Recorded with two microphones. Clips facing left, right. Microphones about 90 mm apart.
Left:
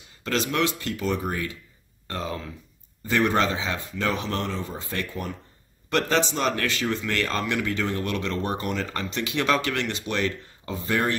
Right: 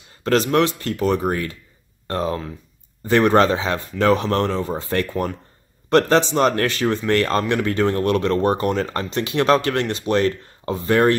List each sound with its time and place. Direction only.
0.2 s speech: 50° right (ahead or behind)
5.9 s speech: 45° right (ahead or behind)